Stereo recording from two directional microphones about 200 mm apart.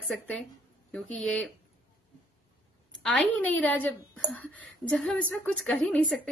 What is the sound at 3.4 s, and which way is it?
A woman's voice, 10° left (ahead or behind).